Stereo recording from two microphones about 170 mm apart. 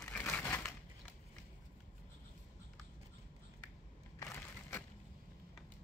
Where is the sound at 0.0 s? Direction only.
10° left (ahead or behind).